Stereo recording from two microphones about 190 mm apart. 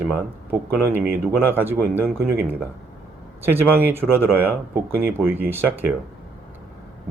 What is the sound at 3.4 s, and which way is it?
Speech, 10° right (ahead or behind).